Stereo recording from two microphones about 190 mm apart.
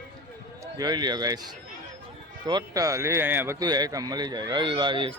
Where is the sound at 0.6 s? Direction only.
20° right (ahead or behind).